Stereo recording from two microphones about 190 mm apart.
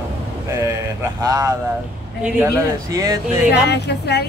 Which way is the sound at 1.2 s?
15° right (ahead or behind).